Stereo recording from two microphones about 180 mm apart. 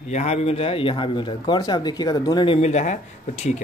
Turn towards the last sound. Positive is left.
turn(degrees=40)  # may be behind; listen again after turning